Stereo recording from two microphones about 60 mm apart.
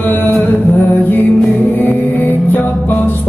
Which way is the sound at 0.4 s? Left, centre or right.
Left.